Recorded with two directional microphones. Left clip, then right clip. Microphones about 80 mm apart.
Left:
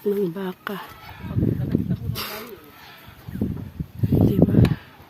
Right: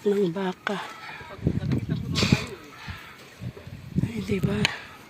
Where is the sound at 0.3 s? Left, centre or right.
Left.